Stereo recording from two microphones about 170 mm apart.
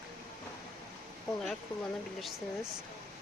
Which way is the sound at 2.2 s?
Centre (ahead or behind).